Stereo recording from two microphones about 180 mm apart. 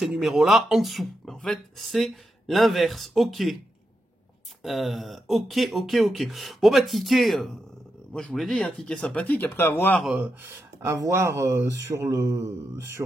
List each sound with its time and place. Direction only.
0.0 s speech: centre (ahead or behind)
4.6 s speech: centre (ahead or behind)
10.0 s speech: 10° right (ahead or behind)